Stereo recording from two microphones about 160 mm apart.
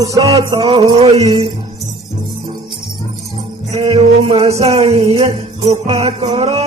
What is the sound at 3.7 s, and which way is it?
Music, 35° right (ahead or behind).